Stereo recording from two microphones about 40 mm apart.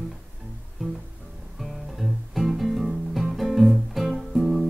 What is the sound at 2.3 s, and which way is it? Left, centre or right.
Music, centre.